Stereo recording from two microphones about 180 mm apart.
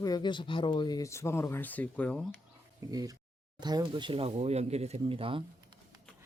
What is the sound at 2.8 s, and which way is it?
Speech, 20° right (ahead or behind).